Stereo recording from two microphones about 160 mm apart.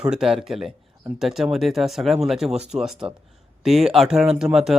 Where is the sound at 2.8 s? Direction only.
5° right (ahead or behind).